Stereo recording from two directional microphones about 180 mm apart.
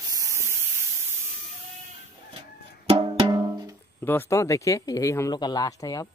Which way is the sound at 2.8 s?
30° right (ahead or behind).